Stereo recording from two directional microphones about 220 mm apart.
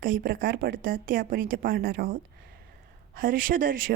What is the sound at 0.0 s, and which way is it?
A woman's voice, 40° right (ahead or behind).